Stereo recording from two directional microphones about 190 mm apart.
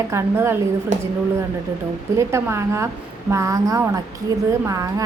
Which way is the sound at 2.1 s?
15° right (ahead or behind).